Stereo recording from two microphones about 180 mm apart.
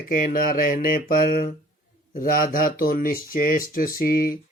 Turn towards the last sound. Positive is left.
turn(degrees=55)  # may be behind; listen again after turning